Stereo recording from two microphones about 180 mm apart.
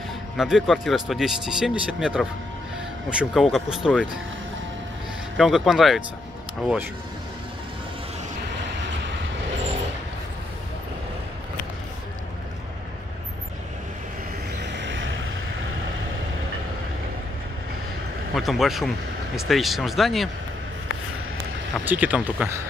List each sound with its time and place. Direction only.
0.4 s speech: centre (ahead or behind)
5.4 s speech: centre (ahead or behind)
14.8 s vehicle: 90° right
18.3 s speech: centre (ahead or behind)
21.8 s speech: 10° right (ahead or behind)